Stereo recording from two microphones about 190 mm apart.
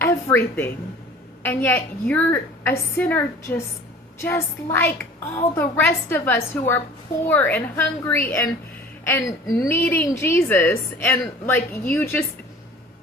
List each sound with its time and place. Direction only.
0.0 s a woman's voice: 10° left (ahead or behind)